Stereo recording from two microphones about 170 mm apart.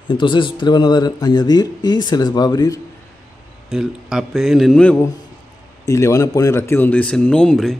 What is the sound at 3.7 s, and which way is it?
Speech, 5° right (ahead or behind).